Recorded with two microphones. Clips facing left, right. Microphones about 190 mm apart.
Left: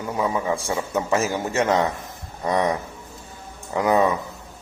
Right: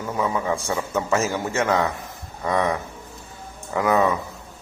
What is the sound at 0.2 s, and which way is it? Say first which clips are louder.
A man's voice: even; 15° left (ahead or behind).